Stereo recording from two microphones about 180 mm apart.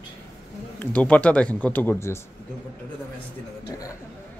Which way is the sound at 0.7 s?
10° left (ahead or behind).